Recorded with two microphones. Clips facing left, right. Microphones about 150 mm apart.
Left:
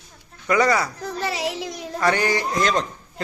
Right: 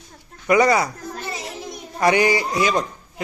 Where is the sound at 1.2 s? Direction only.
80° left.